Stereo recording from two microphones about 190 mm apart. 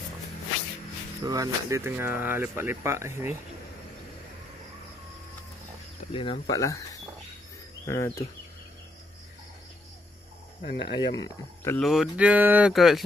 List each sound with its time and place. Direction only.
1.2 s speech: 20° right (ahead or behind)
6.1 s speech: 30° left (ahead or behind)
10.6 s speech: 55° left (ahead or behind)
10.9 s speech: 25° left (ahead or behind)
11.8 s speech: centre (ahead or behind)